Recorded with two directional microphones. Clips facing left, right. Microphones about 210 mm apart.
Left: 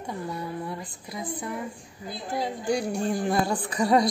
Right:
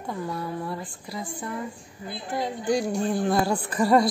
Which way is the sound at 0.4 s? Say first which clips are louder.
Right 2 dB; 20° left (ahead or behind).